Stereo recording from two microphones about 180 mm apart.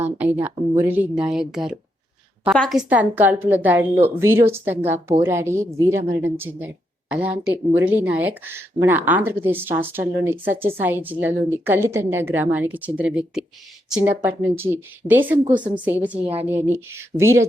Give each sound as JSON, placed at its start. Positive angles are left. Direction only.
{"t": 0.4, "sound": "a woman's voice", "side_deg": -10}
{"t": 15.4, "sound": "a woman's voice", "side_deg": -25}
{"t": 15.7, "sound": "a woman's voice", "side_deg": -10}
{"t": 16.2, "sound": "speech", "side_deg": -30}
{"t": 16.5, "sound": "a woman's voice", "side_deg": -10}